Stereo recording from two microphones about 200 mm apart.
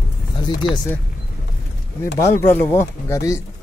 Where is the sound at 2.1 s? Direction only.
15° left (ahead or behind).